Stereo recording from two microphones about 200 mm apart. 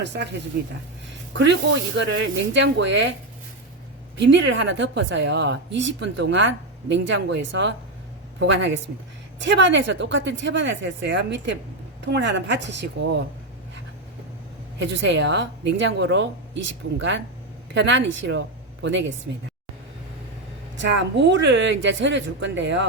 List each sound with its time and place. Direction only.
0.0 s a woman's voice: 60° right (ahead or behind)
1.3 s a woman's voice: 65° right (ahead or behind)
4.2 s a woman's voice: 65° right (ahead or behind)
14.8 s a woman's voice: 65° right (ahead or behind)
20.7 s a woman's voice: 65° right (ahead or behind)